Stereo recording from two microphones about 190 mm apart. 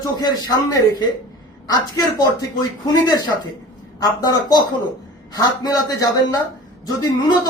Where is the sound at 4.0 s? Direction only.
20° left (ahead or behind).